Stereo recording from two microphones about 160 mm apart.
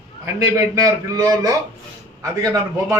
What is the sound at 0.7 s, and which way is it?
Speech, 20° right (ahead or behind).